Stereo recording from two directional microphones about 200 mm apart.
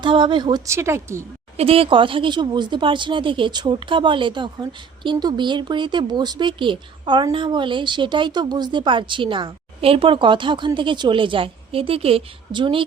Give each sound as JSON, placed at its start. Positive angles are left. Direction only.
{"t": 0.0, "sound": "speech", "side_deg": -25}
{"t": 1.5, "sound": "speech", "side_deg": -30}